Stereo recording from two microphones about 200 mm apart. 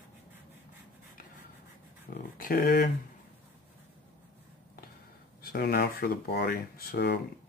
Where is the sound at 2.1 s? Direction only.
45° left (ahead or behind).